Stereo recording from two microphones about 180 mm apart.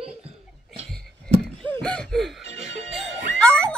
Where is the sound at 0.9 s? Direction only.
5° left (ahead or behind).